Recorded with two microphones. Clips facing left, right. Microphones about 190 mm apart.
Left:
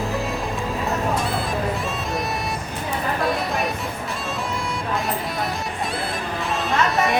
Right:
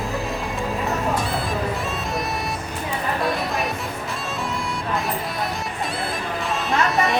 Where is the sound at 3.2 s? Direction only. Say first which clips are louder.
Left 1 dB; centre (ahead or behind).